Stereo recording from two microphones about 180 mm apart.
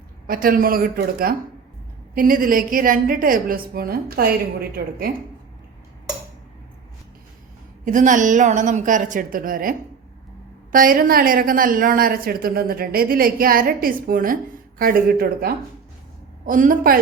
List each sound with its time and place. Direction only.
0.3 s a woman's voice: 50° right (ahead or behind)
7.9 s a woman's voice: 45° right (ahead or behind)